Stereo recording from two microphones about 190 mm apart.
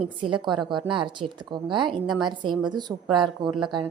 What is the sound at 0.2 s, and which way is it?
Speech, 25° right (ahead or behind).